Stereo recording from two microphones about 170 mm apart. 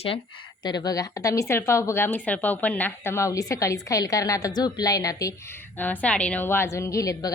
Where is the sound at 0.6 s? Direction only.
25° left (ahead or behind).